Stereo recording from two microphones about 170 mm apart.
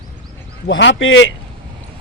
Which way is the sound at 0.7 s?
90° left.